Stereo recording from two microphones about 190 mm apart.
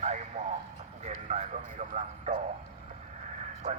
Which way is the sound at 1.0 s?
35° right (ahead or behind).